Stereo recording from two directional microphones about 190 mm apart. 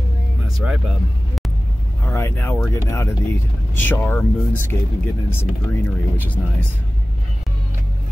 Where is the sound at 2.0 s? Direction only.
15° left (ahead or behind).